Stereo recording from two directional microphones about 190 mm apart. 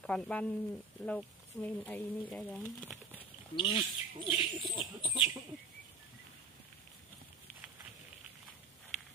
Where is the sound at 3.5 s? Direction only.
25° left (ahead or behind).